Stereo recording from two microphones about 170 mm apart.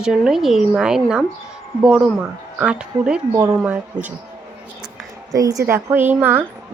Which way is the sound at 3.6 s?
10° right (ahead or behind).